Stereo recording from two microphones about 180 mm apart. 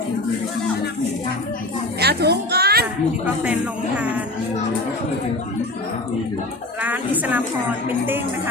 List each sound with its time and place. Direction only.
2.0 s a child's voice: 65° right (ahead or behind)
3.4 s speech: 5° right (ahead or behind)
6.8 s speech: 10° right (ahead or behind)